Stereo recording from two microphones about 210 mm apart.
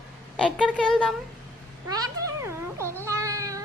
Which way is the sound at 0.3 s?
5° left (ahead or behind).